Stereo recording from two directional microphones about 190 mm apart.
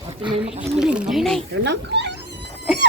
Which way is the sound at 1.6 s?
65° right (ahead or behind).